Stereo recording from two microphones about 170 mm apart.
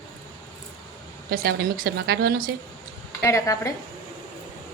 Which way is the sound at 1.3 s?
65° right (ahead or behind).